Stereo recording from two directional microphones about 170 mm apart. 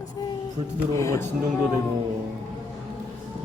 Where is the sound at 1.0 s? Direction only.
15° left (ahead or behind).